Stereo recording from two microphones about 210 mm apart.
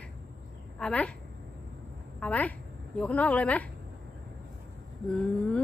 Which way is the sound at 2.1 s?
5° left (ahead or behind).